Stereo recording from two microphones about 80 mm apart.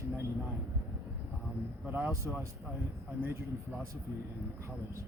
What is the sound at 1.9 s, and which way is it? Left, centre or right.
A man's voice, right.